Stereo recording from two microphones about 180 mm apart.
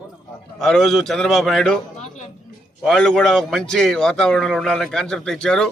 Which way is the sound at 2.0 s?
45° left (ahead or behind).